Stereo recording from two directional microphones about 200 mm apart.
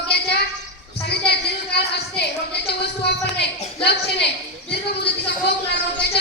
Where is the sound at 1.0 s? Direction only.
55° left (ahead or behind).